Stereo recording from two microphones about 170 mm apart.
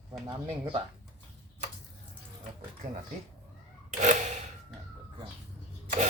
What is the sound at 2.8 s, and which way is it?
Speech, 55° right (ahead or behind).